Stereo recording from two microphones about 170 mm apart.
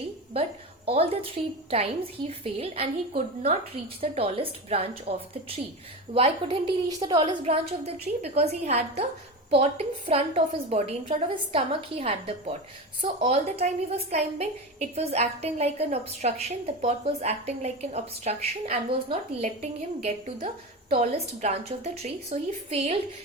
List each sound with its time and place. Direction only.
0.9 s a woman's voice: 35° right (ahead or behind)
20.9 s a woman's voice: 50° right (ahead or behind)